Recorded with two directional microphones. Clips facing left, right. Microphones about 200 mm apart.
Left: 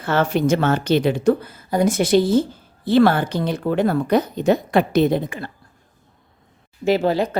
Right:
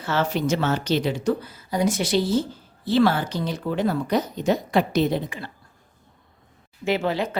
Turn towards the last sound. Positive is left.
turn(degrees=40)  # may be behind; listen again after turning